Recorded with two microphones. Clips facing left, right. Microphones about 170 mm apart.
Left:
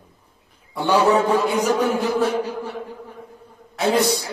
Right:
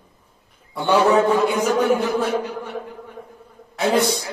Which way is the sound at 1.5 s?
35° left (ahead or behind).